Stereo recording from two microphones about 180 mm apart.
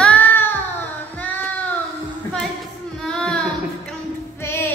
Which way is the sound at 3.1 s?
5° left (ahead or behind).